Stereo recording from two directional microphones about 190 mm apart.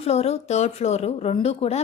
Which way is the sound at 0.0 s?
35° left (ahead or behind).